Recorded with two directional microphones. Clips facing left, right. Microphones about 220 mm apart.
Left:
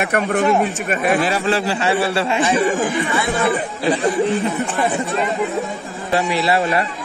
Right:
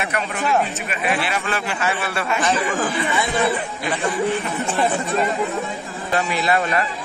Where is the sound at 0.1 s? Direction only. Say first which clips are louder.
Left 6 dB; 50° left (ahead or behind).